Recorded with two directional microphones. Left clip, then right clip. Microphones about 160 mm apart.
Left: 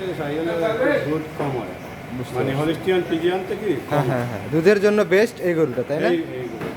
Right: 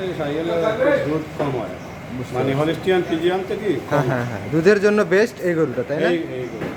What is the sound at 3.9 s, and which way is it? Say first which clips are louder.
A man's voice: right 1 dB; 10° left (ahead or behind).